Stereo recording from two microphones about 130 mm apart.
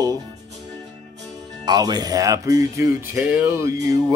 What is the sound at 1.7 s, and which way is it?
Speech, 30° right (ahead or behind).